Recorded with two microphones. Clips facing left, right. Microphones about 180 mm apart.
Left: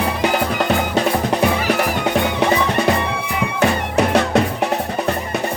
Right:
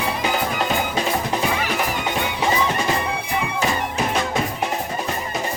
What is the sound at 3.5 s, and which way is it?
Music, 65° left (ahead or behind).